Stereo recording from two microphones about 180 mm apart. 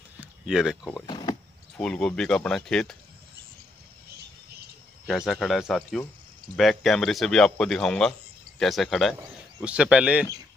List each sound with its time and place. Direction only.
0.2 s speech: 5° right (ahead or behind)
1.0 s power windows: 25° left (ahead or behind)
1.8 s speech: 5° left (ahead or behind)
5.0 s speech: centre (ahead or behind)